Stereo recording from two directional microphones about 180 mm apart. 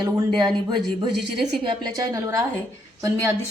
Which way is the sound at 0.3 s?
25° right (ahead or behind).